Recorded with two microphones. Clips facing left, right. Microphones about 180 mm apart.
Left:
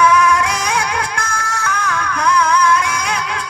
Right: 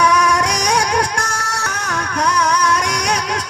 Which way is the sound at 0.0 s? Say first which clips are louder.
Left 2 dB; 40° right (ahead or behind).